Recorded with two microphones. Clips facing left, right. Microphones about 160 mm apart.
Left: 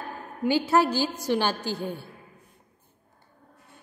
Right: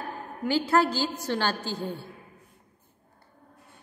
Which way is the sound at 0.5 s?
10° left (ahead or behind).